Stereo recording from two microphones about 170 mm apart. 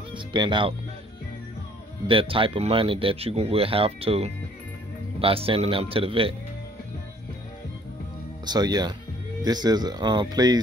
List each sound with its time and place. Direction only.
0.1 s speech: 25° right (ahead or behind)
2.0 s speech: 30° right (ahead or behind)
8.5 s speech: 25° right (ahead or behind)